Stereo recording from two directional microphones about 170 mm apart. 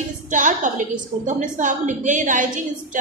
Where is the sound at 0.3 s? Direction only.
50° right (ahead or behind).